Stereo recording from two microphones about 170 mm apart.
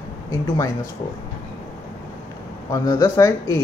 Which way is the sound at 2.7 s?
20° left (ahead or behind).